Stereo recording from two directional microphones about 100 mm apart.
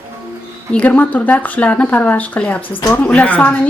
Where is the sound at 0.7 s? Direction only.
15° left (ahead or behind).